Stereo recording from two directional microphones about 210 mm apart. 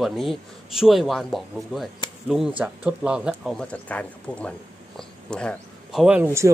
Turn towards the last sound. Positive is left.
turn(degrees=-15)  # may be behind; listen again after turning